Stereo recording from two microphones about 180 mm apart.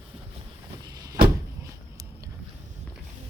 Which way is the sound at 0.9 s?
20° right (ahead or behind).